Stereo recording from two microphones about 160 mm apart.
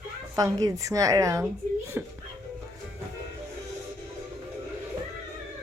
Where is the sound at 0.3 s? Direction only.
20° right (ahead or behind).